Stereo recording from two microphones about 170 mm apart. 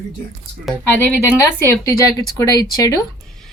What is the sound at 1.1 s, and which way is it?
Speech, 15° left (ahead or behind).